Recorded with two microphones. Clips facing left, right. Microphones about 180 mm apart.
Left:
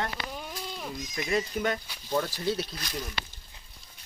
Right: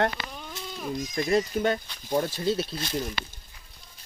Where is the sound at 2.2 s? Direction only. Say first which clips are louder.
Right 3 dB; 25° right (ahead or behind).